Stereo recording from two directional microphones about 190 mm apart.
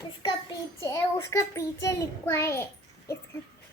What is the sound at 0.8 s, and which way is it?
A child's voice, 15° left (ahead or behind).